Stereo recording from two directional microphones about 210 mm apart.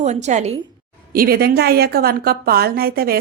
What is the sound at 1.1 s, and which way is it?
A woman's voice, 45° right (ahead or behind).